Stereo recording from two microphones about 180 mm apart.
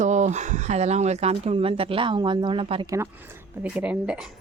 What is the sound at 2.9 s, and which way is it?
Speech, 15° right (ahead or behind).